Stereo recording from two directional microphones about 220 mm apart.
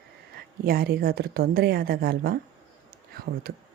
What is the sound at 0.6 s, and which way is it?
Speech, 45° right (ahead or behind).